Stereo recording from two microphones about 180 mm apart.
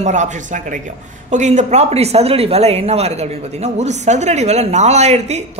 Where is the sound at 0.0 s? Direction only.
40° right (ahead or behind).